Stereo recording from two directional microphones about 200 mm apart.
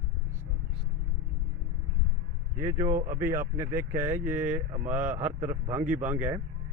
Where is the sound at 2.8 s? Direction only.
40° right (ahead or behind).